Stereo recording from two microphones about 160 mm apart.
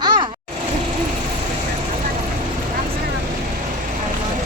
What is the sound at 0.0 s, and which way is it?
Vehicle, 30° right (ahead or behind).